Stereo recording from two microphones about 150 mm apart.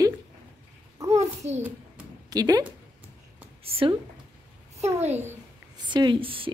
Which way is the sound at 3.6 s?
40° right (ahead or behind).